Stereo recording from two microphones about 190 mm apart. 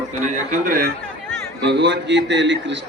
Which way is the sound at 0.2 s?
40° right (ahead or behind).